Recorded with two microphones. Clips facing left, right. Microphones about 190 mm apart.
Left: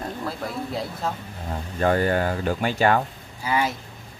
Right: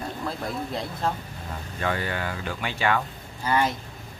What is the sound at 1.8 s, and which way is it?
Speech, 45° left (ahead or behind).